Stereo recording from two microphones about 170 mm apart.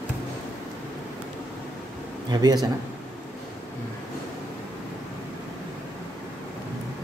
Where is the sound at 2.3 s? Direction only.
25° right (ahead or behind).